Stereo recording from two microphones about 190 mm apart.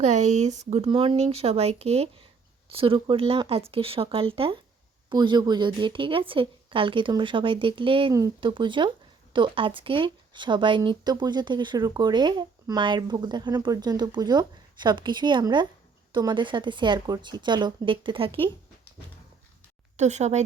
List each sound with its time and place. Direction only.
0.0 s speech: 35° right (ahead or behind)
20.0 s speech: 35° right (ahead or behind)